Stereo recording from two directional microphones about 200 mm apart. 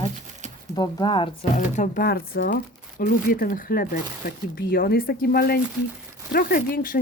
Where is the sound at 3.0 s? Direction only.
45° left (ahead or behind).